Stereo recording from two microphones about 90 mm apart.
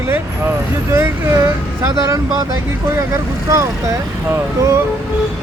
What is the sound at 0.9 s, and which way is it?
Vehicle, 35° right (ahead or behind).